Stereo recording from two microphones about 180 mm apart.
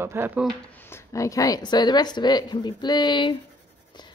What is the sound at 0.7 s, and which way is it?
Speech, 15° left (ahead or behind).